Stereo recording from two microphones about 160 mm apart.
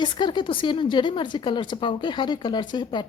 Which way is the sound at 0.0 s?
30° left (ahead or behind).